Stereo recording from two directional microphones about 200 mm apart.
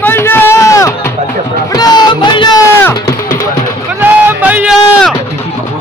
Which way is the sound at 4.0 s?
10° right (ahead or behind).